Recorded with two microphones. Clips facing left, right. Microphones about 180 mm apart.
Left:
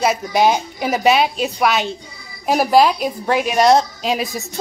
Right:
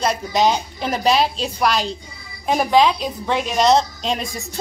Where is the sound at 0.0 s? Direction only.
10° left (ahead or behind).